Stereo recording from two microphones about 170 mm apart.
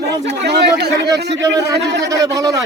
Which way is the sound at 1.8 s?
90° right.